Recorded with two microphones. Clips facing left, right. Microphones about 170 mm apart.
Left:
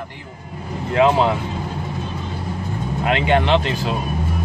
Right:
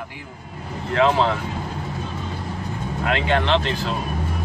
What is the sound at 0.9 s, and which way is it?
Speech, 15° left (ahead or behind).